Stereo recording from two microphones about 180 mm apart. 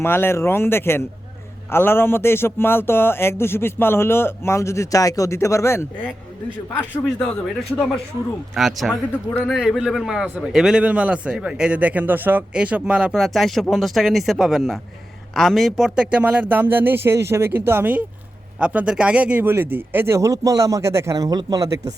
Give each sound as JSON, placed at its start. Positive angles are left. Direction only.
{"t": 0.0, "sound": "speech", "side_deg": 15}
{"t": 7.2, "sound": "a man's voice", "side_deg": 5}
{"t": 8.5, "sound": "a man's voice", "side_deg": 0}